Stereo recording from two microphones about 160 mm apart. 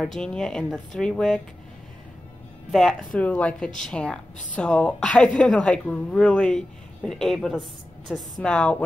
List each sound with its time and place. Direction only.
0.0 s speech: 5° left (ahead or behind)
2.7 s speech: 5° left (ahead or behind)